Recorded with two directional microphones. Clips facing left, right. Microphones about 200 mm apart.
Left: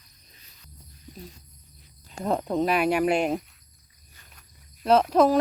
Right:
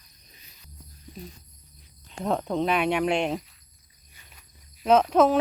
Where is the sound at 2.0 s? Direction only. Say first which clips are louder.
Even; centre (ahead or behind).